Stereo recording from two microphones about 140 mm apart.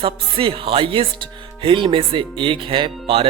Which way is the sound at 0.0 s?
40° right (ahead or behind).